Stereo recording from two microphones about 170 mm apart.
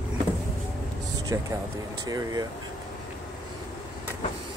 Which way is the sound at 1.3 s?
20° right (ahead or behind).